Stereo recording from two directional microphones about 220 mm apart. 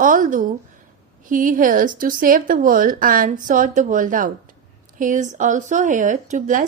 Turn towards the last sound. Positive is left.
turn(degrees=-35)  # may be behind; listen again after turning